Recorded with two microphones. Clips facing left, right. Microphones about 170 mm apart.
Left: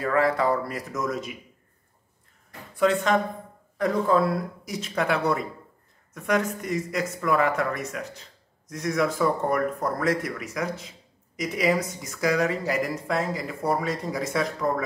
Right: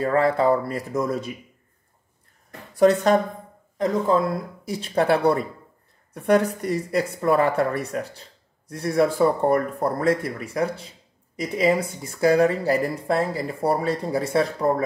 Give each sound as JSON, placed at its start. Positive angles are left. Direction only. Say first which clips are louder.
{"t": 0.0, "sound": "speech", "louder": "right 3 dB", "side_deg": -30}
{"t": 2.7, "sound": "speech", "louder": "right 5 dB", "side_deg": -40}
{"t": 3.7, "sound": "speech", "louder": "right 2 dB", "side_deg": -25}
{"t": 4.6, "sound": "speech", "louder": "right 6 dB", "side_deg": -35}